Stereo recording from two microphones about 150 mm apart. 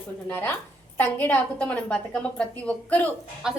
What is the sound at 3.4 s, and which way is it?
Speech, 5° right (ahead or behind).